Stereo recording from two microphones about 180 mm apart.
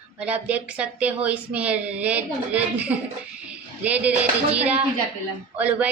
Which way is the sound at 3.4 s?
10° right (ahead or behind).